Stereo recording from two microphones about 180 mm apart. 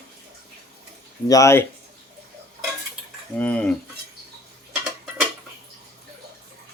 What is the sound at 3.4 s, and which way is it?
Speech, 5° left (ahead or behind).